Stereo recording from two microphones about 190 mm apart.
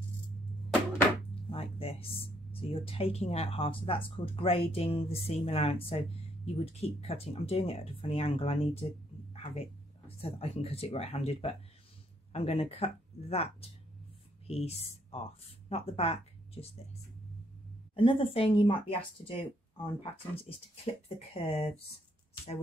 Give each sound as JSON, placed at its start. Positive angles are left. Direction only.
{"t": 1.5, "sound": "speech", "side_deg": 30}
{"t": 9.3, "sound": "music", "side_deg": 30}
{"t": 10.4, "sound": "speech", "side_deg": 30}
{"t": 17.9, "sound": "speech", "side_deg": 25}